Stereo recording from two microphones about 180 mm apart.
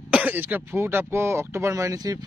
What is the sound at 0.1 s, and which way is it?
Speech, 10° right (ahead or behind).